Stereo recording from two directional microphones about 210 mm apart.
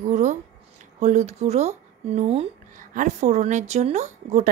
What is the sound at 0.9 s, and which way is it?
Speech, 35° right (ahead or behind).